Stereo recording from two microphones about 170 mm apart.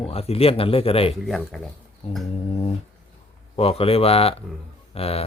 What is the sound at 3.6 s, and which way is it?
Speech, 35° left (ahead or behind).